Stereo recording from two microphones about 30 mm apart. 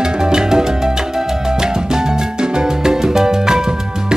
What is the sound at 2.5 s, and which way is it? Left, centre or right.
Music, right.